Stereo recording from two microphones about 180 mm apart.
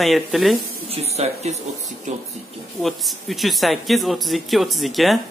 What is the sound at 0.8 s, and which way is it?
Speech, 35° right (ahead or behind).